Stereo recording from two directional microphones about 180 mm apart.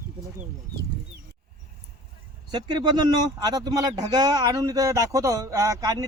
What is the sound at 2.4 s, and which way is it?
Speech, 25° right (ahead or behind).